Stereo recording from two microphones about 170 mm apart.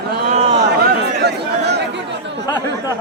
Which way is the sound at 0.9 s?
75° right (ahead or behind).